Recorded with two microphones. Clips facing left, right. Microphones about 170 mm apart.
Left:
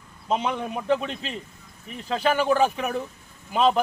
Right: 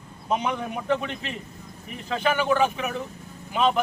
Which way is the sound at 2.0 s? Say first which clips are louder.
Left 1 dB; 35° left (ahead or behind).